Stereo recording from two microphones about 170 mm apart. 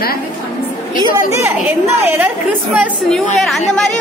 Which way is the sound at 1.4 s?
15° right (ahead or behind).